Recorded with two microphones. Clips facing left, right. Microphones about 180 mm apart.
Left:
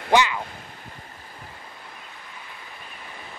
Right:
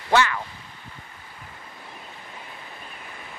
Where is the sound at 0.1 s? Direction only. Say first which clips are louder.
Left 1 dB; 15° left (ahead or behind).